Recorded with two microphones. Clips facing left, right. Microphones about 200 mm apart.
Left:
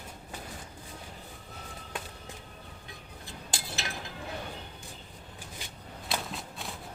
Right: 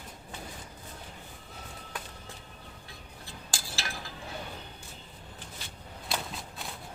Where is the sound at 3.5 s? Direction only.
20° left (ahead or behind).